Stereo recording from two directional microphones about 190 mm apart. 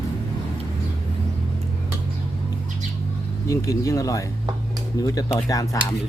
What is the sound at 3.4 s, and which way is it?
Speech, 15° left (ahead or behind).